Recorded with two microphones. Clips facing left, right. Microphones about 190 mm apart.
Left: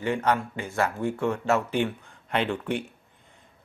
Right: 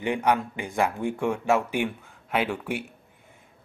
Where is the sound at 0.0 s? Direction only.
15° right (ahead or behind).